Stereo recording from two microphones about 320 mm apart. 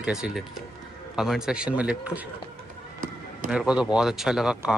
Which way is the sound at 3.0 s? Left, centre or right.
Right.